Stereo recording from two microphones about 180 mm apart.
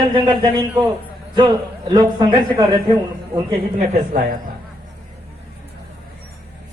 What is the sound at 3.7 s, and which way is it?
Speech, 45° right (ahead or behind).